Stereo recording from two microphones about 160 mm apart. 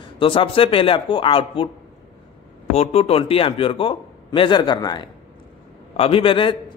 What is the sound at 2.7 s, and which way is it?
Speech, 40° left (ahead or behind).